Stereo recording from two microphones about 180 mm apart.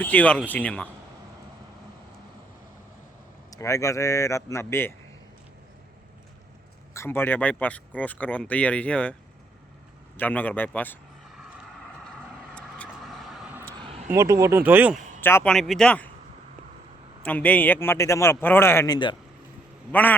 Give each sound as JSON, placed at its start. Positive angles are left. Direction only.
{"t": 0.0, "sound": "speech", "side_deg": 10}
{"t": 3.5, "sound": "speech", "side_deg": 15}
{"t": 6.9, "sound": "speech", "side_deg": 15}
{"t": 10.2, "sound": "speech", "side_deg": 10}
{"t": 12.5, "sound": "vehicle", "side_deg": 5}
{"t": 13.7, "sound": "a sound", "side_deg": -30}
{"t": 14.1, "sound": "speech", "side_deg": -15}
{"t": 15.2, "sound": "speech", "side_deg": 10}
{"t": 15.5, "sound": "speech", "side_deg": 0}
{"t": 17.2, "sound": "speech", "side_deg": 10}